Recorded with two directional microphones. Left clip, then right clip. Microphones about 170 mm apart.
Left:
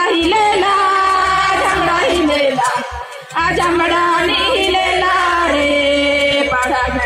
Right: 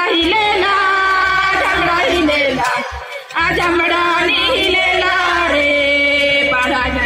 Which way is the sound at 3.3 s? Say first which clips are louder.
Even; 30° left (ahead or behind).